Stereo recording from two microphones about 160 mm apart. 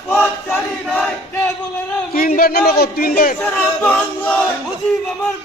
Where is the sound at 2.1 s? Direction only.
60° left (ahead or behind).